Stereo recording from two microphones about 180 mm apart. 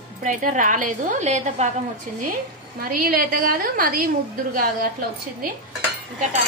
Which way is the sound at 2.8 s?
55° right (ahead or behind).